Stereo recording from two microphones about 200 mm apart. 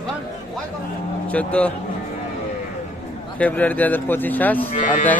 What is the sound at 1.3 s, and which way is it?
Speech, 5° left (ahead or behind).